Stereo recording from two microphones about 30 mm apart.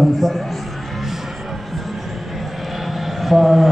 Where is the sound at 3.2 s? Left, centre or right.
Centre.